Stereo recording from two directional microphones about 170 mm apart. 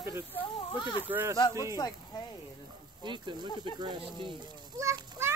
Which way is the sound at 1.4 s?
20° left (ahead or behind).